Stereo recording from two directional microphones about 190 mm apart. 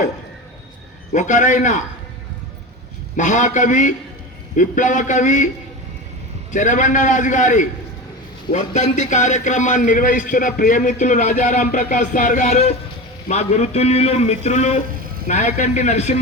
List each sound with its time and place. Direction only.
1.1 s a man's voice: 40° left (ahead or behind)
3.2 s a man's voice: 40° left (ahead or behind)
6.5 s a man's voice: 40° left (ahead or behind)